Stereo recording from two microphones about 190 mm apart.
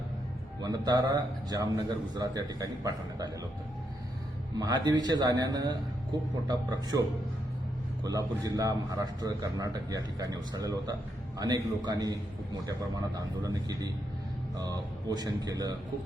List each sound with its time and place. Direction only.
0.6 s a man's voice: 20° right (ahead or behind)
4.5 s a man's voice: 20° right (ahead or behind)
8.0 s a man's voice: 20° right (ahead or behind)
15.0 s a man's voice: 20° right (ahead or behind)